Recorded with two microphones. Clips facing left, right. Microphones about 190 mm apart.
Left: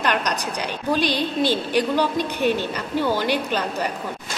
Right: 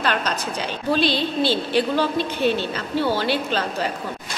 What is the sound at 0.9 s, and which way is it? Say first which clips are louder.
A woman's voice: right 1 dB; 15° left (ahead or behind).